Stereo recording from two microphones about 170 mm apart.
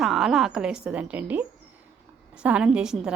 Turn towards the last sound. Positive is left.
turn(degrees=-5)  # may be behind; listen again after turning